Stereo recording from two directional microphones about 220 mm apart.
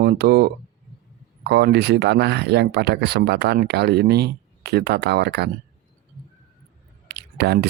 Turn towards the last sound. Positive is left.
turn(degrees=-50)  # may be behind; listen again after turning